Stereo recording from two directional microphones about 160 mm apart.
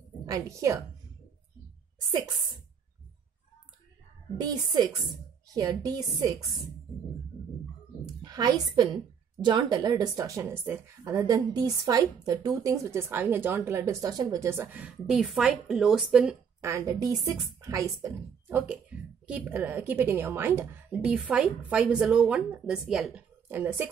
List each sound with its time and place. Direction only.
0.3 s a woman's voice: 20° right (ahead or behind)
4.4 s a woman's voice: 25° right (ahead or behind)
8.0 s a woman's voice: 25° right (ahead or behind); by 16.3 s 5° right (ahead or behind)
16.6 s a woman's voice: 20° right (ahead or behind)
18.7 s a woman's voice: 10° right (ahead or behind)